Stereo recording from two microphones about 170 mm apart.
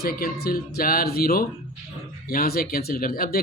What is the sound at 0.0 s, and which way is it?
Speech, 60° left (ahead or behind).